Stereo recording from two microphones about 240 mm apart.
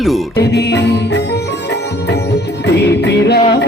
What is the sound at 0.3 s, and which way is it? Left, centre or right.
Music, left.